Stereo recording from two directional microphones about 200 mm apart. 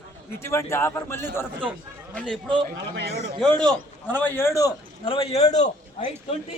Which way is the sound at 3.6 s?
5° left (ahead or behind).